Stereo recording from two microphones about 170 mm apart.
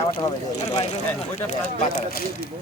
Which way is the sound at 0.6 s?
40° left (ahead or behind).